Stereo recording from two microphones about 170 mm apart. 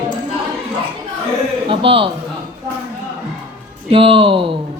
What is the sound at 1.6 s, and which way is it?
Speech, 30° right (ahead or behind).